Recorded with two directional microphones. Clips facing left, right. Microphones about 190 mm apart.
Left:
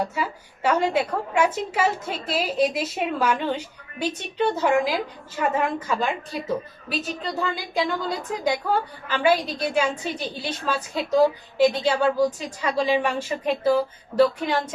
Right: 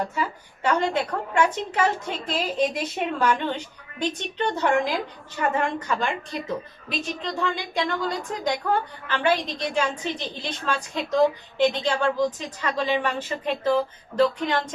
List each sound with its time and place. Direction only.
0.0 s a woman's voice: 10° left (ahead or behind)